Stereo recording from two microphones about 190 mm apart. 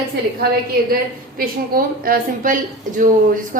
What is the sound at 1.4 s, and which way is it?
A woman's voice, 50° right (ahead or behind).